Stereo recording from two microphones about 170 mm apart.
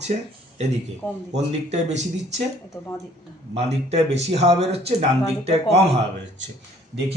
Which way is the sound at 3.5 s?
40° right (ahead or behind).